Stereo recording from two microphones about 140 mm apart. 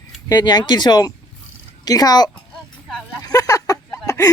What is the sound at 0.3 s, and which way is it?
Speech, 30° left (ahead or behind).